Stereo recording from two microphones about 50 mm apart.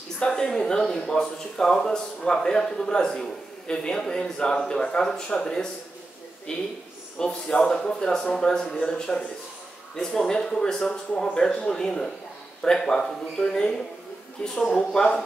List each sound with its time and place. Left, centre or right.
0.2 s speech: centre